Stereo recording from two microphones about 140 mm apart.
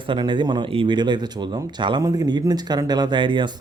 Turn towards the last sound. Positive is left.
turn(degrees=-35)  # may be behind; listen again after turning